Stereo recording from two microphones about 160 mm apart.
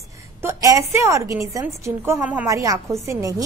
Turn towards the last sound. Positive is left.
turn(degrees=-20)  # may be behind; listen again after turning